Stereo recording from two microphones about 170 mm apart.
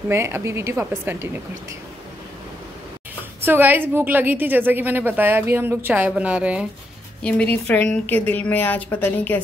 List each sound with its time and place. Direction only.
0.1 s a woman's voice: 15° right (ahead or behind)
3.4 s a woman's voice: 10° right (ahead or behind)
7.2 s a woman's voice: 5° left (ahead or behind)